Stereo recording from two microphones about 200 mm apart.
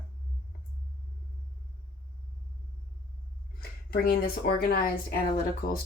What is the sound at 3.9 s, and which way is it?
Speech, 50° left (ahead or behind).